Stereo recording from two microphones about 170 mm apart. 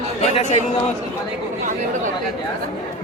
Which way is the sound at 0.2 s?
40° left (ahead or behind).